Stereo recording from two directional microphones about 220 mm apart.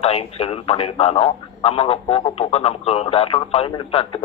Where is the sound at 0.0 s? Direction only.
25° left (ahead or behind).